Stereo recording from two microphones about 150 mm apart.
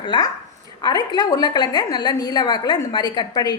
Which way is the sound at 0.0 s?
30° left (ahead or behind).